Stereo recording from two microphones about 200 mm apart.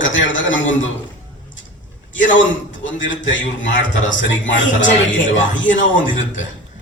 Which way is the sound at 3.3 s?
70° left (ahead or behind).